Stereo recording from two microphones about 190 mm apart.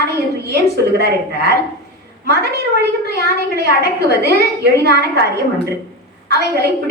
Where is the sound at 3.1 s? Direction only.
55° right (ahead or behind).